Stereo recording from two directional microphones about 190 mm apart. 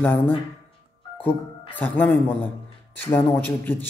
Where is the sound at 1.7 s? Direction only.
10° left (ahead or behind).